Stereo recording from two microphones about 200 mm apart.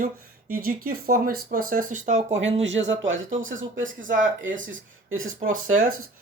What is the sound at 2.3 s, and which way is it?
Speech, 70° right (ahead or behind).